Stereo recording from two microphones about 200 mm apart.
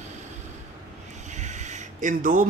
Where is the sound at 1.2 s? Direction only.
35° right (ahead or behind).